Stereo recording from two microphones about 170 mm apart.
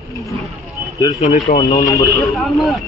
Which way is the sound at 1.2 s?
40° left (ahead or behind).